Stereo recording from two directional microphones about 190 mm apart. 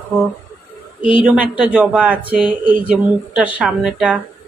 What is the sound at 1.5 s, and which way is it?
A woman's voice, 5° right (ahead or behind).